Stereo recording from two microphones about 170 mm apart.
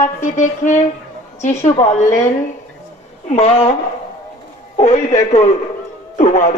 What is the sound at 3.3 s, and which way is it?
Speech, 35° left (ahead or behind).